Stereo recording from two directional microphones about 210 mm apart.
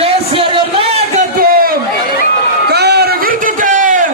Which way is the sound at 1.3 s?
45° right (ahead or behind).